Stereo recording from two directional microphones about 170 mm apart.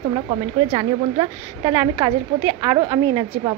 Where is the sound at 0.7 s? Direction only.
35° right (ahead or behind).